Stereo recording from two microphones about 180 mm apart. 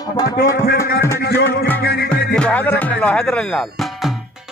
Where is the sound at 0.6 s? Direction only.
55° left (ahead or behind).